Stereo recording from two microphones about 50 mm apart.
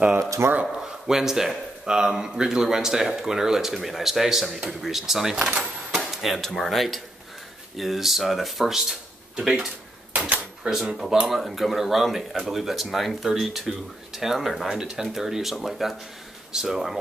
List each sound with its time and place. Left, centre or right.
0.4 s speech: right
0.7 s speech: centre